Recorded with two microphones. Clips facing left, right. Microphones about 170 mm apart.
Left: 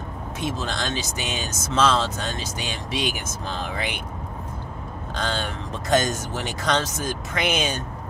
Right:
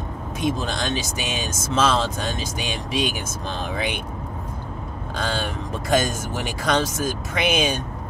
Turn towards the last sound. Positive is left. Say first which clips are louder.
# right 3 dB
turn(degrees=-10)  # may be behind; listen again after turning